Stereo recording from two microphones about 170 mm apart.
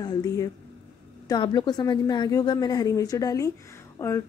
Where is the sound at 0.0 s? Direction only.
20° left (ahead or behind).